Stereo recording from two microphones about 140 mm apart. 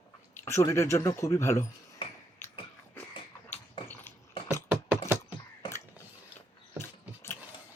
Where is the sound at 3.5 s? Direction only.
15° left (ahead or behind).